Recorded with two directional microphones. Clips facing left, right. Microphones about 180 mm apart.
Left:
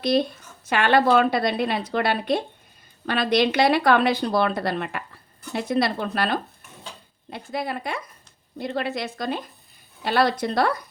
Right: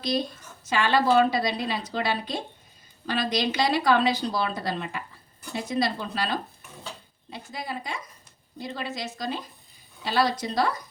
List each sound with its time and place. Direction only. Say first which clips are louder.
0.0 s a woman's voice: left 6 dB; 60° left (ahead or behind)